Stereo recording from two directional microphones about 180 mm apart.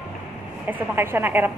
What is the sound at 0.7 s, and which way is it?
Speech, 10° right (ahead or behind).